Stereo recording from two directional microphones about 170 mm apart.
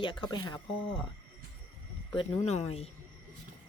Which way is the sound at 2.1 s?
40° left (ahead or behind).